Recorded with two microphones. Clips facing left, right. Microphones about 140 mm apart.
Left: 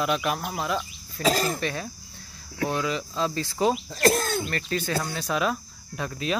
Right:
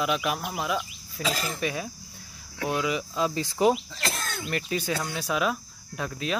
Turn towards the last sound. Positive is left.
turn(degrees=0)  # may be behind; listen again after turning